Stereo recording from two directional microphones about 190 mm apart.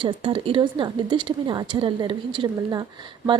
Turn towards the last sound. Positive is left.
turn(degrees=-25)  # may be behind; listen again after turning